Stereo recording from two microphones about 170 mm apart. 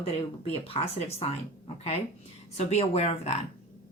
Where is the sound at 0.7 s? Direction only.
35° left (ahead or behind).